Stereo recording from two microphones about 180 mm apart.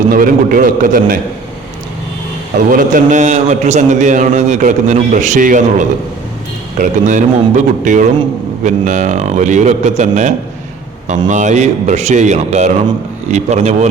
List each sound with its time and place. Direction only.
0.1 s a man's voice: 50° right (ahead or behind)
2.6 s a man's voice: 50° right (ahead or behind)